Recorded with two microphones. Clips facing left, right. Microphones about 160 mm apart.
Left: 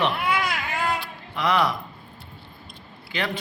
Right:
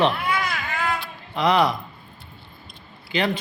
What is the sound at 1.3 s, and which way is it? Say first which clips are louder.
Speech: right 3 dB; 20° right (ahead or behind).